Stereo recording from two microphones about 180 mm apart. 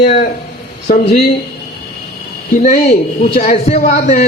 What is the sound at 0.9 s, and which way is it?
Speech, 50° left (ahead or behind).